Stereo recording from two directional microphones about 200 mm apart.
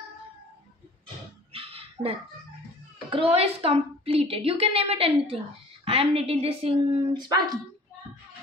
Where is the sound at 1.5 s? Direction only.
30° right (ahead or behind).